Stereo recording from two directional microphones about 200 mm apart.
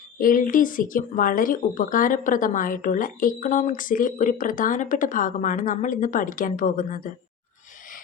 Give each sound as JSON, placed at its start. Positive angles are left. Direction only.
{"t": 0.2, "sound": "speech", "side_deg": 45}